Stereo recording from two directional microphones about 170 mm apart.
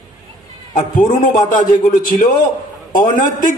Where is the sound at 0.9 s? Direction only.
55° left (ahead or behind).